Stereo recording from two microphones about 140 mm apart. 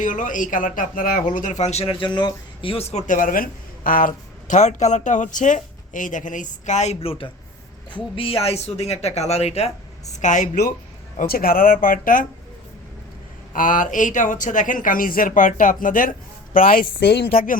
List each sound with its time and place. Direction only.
0.0 s speech: 65° left (ahead or behind); by 3.0 s 45° left (ahead or behind)
3.1 s speech: 75° left (ahead or behind); by 9.7 s 50° left (ahead or behind)
10.2 s speech: 60° left (ahead or behind)
11.2 s speech: 90° left
13.5 s speech: 70° left (ahead or behind)
16.6 s speech: 90° left